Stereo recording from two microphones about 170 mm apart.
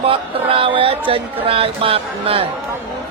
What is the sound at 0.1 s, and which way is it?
Speech, 35° right (ahead or behind).